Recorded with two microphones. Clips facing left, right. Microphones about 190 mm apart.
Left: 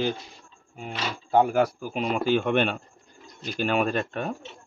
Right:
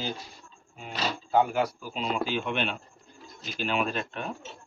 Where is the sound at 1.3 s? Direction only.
50° left (ahead or behind).